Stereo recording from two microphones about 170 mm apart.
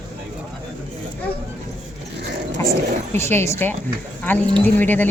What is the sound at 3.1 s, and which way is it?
A woman's voice, 15° left (ahead or behind).